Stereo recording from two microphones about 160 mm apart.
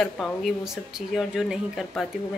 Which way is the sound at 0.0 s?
Centre (ahead or behind).